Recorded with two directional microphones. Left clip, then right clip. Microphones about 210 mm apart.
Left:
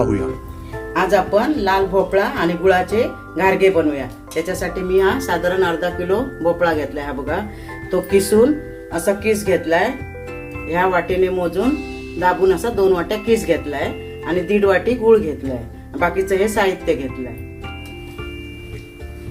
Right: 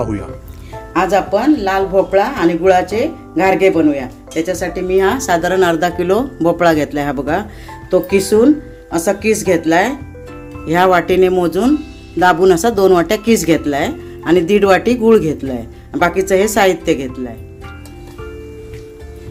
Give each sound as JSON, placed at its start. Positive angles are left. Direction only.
{"t": 0.0, "sound": "speech", "side_deg": 0}
{"t": 0.9, "sound": "speech", "side_deg": -30}